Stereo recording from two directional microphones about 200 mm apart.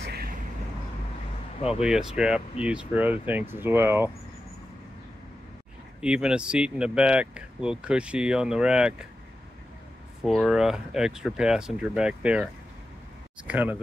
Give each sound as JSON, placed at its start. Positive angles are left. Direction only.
{"t": 0.0, "sound": "vehicle", "side_deg": -55}
{"t": 1.8, "sound": "speech", "side_deg": -5}
{"t": 5.9, "sound": "speech", "side_deg": -5}
{"t": 10.2, "sound": "speech", "side_deg": 0}
{"t": 13.5, "sound": "speech", "side_deg": -10}